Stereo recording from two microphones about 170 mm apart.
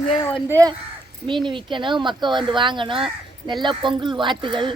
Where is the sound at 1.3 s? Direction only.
30° right (ahead or behind).